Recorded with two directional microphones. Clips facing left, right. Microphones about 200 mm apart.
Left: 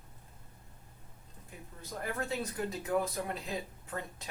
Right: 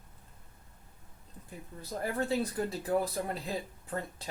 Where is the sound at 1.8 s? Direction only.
35° right (ahead or behind).